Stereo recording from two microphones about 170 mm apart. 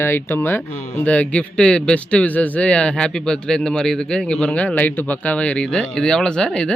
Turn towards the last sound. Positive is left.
turn(degrees=5)  # may be behind; listen again after turning